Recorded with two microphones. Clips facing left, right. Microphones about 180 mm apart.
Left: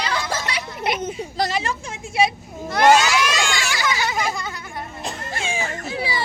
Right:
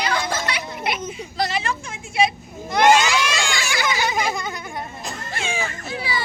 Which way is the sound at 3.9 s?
20° right (ahead or behind).